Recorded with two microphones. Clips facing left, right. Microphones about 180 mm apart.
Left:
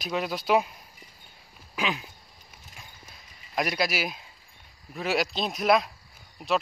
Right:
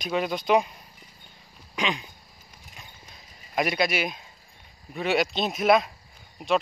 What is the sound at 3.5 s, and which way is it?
Speech, centre (ahead or behind).